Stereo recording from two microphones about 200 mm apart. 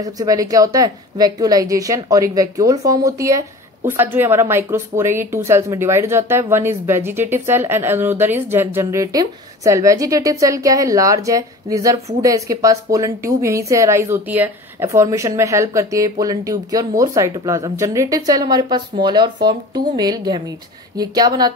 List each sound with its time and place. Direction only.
0.0 s a woman's voice: 20° right (ahead or behind)